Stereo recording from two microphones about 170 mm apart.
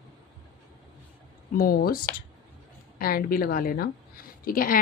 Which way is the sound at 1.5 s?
60° left (ahead or behind).